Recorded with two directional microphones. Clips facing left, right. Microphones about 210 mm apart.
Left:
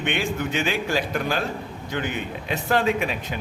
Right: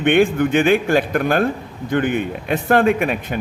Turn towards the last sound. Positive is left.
turn(degrees=-55)  # may be behind; listen again after turning